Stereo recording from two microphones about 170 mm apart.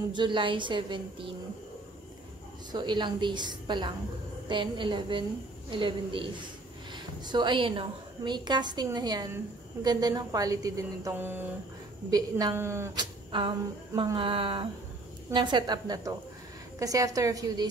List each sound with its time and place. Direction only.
0.1 s a woman's voice: 30° right (ahead or behind)
2.7 s a woman's voice: 25° right (ahead or behind); by 11.4 s 10° right (ahead or behind)
12.1 s a woman's voice: 25° right (ahead or behind)
13.9 s a woman's voice: 30° right (ahead or behind)